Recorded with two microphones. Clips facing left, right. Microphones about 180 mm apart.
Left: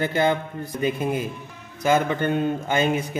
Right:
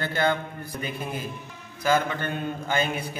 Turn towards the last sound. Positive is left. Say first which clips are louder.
# left 5 dB
turn(degrees=20)  # may be behind; listen again after turning